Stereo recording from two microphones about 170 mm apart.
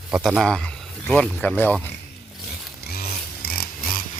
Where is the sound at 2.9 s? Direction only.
65° left (ahead or behind).